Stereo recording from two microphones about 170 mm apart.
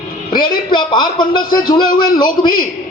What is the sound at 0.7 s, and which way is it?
Speech, 25° left (ahead or behind).